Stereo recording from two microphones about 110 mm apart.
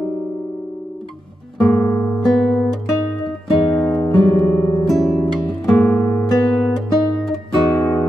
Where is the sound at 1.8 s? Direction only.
20° left (ahead or behind).